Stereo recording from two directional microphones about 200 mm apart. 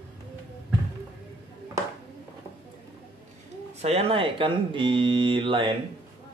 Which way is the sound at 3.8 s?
30° right (ahead or behind).